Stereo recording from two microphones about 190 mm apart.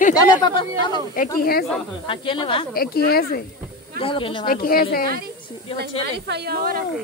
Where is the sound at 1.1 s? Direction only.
50° left (ahead or behind).